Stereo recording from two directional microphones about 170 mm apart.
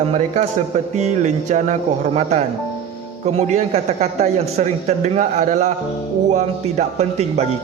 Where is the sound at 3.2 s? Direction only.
40° right (ahead or behind).